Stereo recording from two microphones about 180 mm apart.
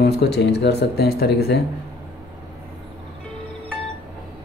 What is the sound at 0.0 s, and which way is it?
Speech, 65° left (ahead or behind).